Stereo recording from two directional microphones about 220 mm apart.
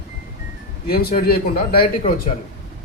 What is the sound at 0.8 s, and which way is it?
Speech, 45° left (ahead or behind).